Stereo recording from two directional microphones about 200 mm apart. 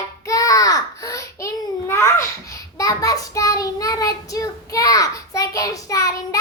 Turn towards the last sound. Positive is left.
turn(degrees=15)  # may be behind; listen again after turning